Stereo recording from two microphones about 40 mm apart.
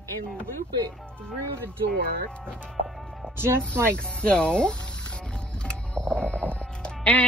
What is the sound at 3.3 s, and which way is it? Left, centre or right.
Speech, right.